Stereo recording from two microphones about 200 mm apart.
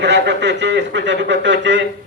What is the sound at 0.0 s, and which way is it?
Speech, 60° right (ahead or behind).